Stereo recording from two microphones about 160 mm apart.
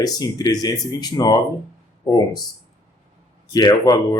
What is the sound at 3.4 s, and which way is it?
Speech, 25° left (ahead or behind).